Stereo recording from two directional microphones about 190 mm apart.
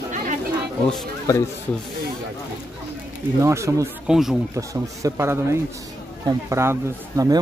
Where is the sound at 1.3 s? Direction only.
15° left (ahead or behind).